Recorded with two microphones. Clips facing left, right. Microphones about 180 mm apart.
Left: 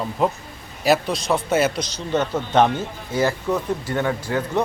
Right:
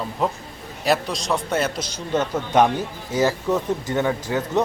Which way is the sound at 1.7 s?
10° right (ahead or behind).